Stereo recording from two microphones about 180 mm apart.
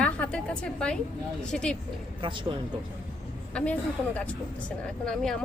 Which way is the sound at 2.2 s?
25° right (ahead or behind).